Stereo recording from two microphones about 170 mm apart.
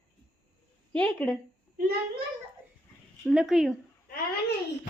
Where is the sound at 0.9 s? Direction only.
5° left (ahead or behind).